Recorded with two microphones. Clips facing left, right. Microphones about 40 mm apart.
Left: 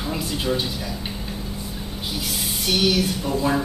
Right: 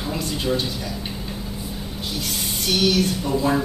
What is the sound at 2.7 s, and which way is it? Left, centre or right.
Speech, centre.